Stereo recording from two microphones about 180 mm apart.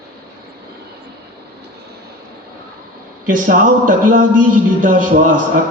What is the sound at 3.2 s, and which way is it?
A man's voice, 50° right (ahead or behind).